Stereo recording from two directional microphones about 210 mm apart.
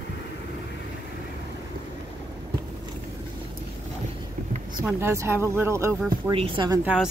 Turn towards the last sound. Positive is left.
turn(degrees=-5)  # may be behind; listen again after turning